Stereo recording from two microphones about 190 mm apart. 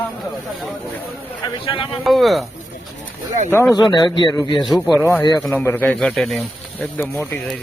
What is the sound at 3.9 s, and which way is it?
Speech, 25° left (ahead or behind).